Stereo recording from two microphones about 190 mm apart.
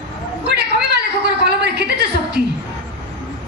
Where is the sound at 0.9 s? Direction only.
60° right (ahead or behind).